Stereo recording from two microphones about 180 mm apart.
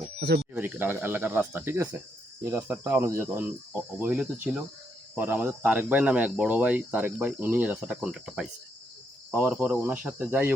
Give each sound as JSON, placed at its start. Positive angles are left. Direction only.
{"t": 0.5, "sound": "speech", "side_deg": -10}